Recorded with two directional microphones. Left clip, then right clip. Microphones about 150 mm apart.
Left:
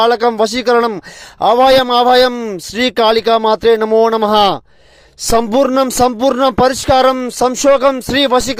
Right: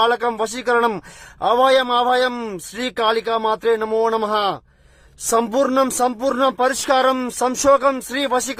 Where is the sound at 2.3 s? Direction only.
20° left (ahead or behind).